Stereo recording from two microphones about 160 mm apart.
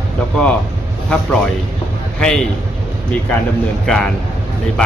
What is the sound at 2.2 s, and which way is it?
Speech, 5° left (ahead or behind).